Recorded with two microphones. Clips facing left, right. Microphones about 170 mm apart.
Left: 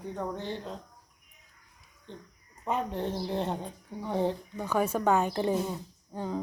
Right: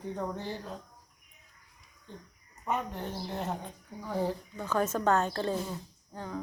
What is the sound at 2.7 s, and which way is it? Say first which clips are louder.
A woman's voice: left 3 dB; 30° left (ahead or behind).